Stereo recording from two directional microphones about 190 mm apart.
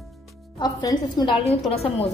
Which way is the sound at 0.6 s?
25° left (ahead or behind).